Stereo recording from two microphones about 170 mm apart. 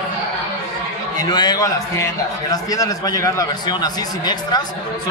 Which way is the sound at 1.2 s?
25° left (ahead or behind).